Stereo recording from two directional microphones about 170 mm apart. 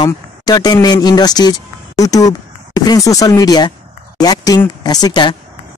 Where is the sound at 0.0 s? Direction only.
25° left (ahead or behind).